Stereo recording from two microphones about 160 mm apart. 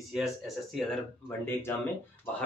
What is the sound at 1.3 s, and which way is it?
Speech, 15° left (ahead or behind).